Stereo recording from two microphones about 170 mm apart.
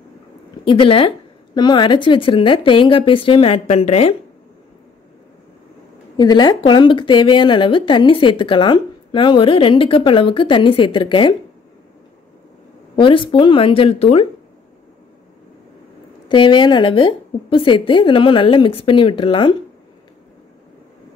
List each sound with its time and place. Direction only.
0.7 s speech: 30° left (ahead or behind)
6.1 s a woman's voice: 25° left (ahead or behind)
12.9 s speech: 30° left (ahead or behind)
16.3 s a woman's voice: 30° left (ahead or behind)